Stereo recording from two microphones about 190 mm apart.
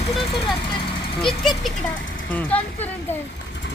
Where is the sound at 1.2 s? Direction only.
Centre (ahead or behind).